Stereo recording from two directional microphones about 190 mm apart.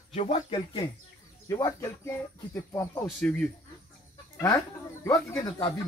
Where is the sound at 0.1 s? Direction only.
35° left (ahead or behind); by 3.0 s 15° left (ahead or behind).